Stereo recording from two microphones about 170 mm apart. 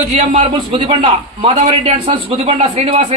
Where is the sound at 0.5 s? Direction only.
30° right (ahead or behind).